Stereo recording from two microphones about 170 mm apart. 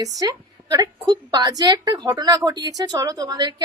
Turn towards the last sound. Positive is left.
turn(degrees=-25)  # may be behind; listen again after turning